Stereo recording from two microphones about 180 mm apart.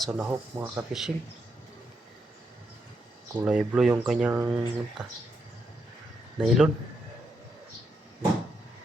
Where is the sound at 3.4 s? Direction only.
5° right (ahead or behind).